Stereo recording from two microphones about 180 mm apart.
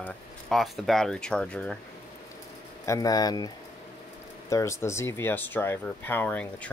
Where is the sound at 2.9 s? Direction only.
20° left (ahead or behind).